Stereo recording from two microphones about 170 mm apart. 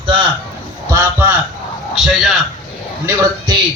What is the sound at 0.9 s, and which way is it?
Speech, 15° right (ahead or behind).